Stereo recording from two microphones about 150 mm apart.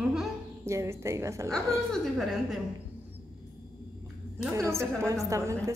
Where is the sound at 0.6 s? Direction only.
20° right (ahead or behind).